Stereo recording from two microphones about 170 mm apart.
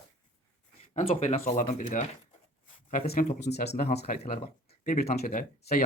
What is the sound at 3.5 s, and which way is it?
Speech, 80° left.